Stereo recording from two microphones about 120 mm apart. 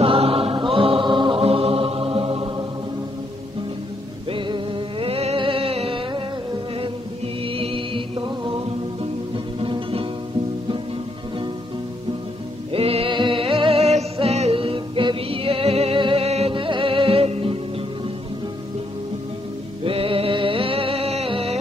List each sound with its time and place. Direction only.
0.0 s chant: 50° right (ahead or behind)
4.3 s music: 45° right (ahead or behind)
7.4 s music: 50° right (ahead or behind)
12.7 s music: 55° right (ahead or behind)
19.8 s music: 50° right (ahead or behind)